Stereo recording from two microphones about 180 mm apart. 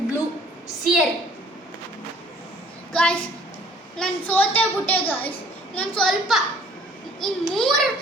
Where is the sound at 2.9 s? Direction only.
5° left (ahead or behind).